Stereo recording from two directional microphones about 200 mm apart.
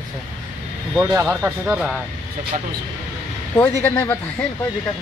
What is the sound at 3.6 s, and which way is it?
Speech, 10° left (ahead or behind).